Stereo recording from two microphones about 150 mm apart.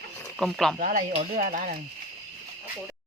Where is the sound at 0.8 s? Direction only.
65° right (ahead or behind).